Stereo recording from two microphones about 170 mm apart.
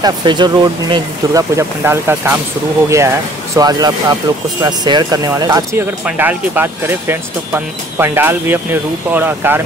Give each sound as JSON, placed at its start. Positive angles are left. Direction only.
{"t": 0.0, "sound": "speech", "side_deg": -25}